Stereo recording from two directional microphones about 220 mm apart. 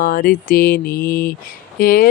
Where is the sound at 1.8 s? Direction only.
40° left (ahead or behind).